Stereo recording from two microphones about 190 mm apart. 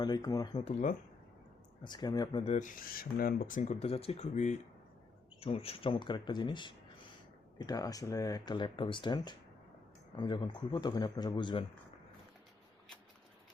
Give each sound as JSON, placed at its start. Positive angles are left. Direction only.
{"t": 0.0, "sound": "speech", "side_deg": 20}
{"t": 0.6, "sound": "speech", "side_deg": 40}
{"t": 1.8, "sound": "speech", "side_deg": 20}
{"t": 2.4, "sound": "speech", "side_deg": 40}